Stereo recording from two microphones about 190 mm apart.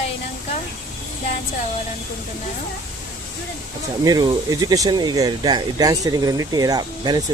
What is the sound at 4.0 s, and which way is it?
Speech, 20° right (ahead or behind).